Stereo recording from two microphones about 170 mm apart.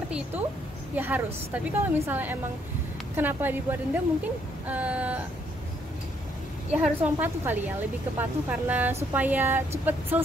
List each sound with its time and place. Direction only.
0.9 s speech: 10° right (ahead or behind)
6.7 s speech: 10° right (ahead or behind)